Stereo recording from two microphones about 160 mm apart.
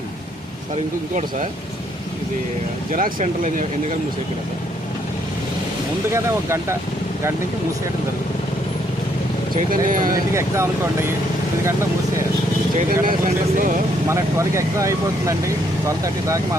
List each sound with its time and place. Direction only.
2.9 s speech: 55° right (ahead or behind)
6.1 s speech: 15° right (ahead or behind)
9.6 s speech: 60° right (ahead or behind)
10.3 s speech: 15° right (ahead or behind)
12.9 s speech: 60° right (ahead or behind)
14.1 s speech: 20° right (ahead or behind)